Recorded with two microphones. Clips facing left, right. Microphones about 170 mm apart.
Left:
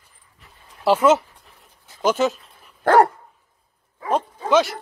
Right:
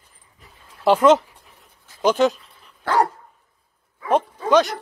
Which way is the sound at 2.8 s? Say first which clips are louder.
Left 5 dB; 55° left (ahead or behind).